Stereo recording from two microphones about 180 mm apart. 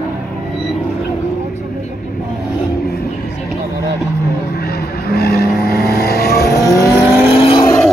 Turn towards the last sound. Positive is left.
turn(degrees=30)  # may be behind; listen again after turning